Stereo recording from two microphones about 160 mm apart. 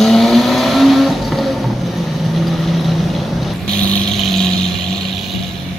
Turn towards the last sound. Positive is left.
turn(degrees=5)  # may be behind; listen again after turning